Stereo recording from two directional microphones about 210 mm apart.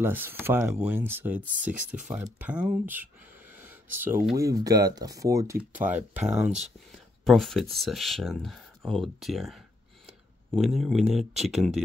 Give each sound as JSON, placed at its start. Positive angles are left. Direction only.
{"t": 0.0, "sound": "speech", "side_deg": -10}
{"t": 3.5, "sound": "a sound", "side_deg": -10}
{"t": 4.6, "sound": "speech", "side_deg": -15}